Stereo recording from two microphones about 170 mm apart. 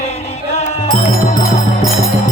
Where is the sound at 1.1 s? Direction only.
55° left (ahead or behind).